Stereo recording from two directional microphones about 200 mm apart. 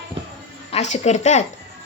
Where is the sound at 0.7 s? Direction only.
35° left (ahead or behind).